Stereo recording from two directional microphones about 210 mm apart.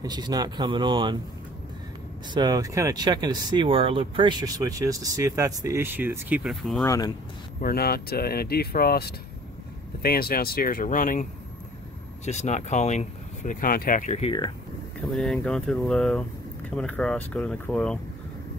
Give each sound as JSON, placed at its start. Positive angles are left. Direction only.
{"t": 0.0, "sound": "speech", "side_deg": -20}
{"t": 2.3, "sound": "speech", "side_deg": -15}
{"t": 6.8, "sound": "speech", "side_deg": 15}
{"t": 7.6, "sound": "speech", "side_deg": 45}
{"t": 12.3, "sound": "speech", "side_deg": 35}
{"t": 15.0, "sound": "speech", "side_deg": 0}